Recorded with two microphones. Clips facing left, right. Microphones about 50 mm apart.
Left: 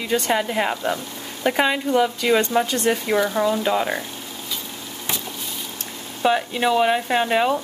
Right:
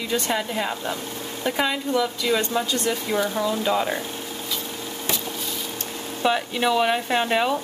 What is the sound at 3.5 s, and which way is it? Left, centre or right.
Speech, centre.